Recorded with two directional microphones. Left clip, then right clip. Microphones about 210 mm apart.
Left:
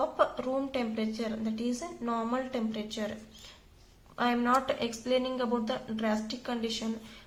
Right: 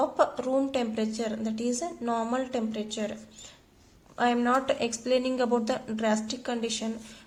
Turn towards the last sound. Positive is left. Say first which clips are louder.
# right 3 dB
turn(degrees=-30)  # may be behind; listen again after turning